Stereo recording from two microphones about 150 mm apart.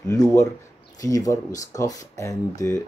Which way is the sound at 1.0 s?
25° left (ahead or behind).